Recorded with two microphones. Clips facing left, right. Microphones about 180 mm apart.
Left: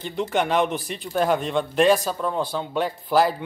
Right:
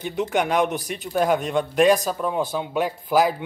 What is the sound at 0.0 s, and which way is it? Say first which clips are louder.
Speech: right 1 dB; 5° right (ahead or behind).